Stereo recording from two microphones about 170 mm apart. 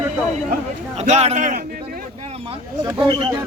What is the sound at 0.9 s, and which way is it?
Speech, 40° right (ahead or behind).